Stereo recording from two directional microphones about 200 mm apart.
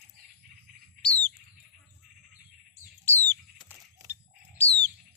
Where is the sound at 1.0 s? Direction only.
10° left (ahead or behind).